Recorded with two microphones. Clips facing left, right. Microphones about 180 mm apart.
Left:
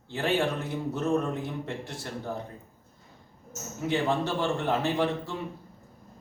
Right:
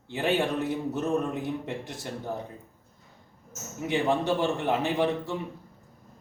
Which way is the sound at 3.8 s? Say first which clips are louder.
Right 2 dB; 15° right (ahead or behind).